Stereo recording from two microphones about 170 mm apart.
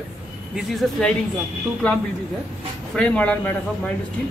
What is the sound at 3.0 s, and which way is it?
Speech, 5° left (ahead or behind).